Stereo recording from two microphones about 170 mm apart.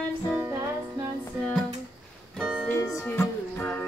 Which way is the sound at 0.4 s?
15° right (ahead or behind).